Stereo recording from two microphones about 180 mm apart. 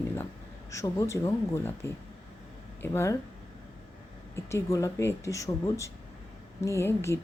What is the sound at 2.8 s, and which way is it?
Speech, 15° left (ahead or behind).